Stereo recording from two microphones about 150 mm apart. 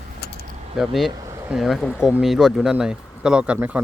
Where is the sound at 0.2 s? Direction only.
90° left.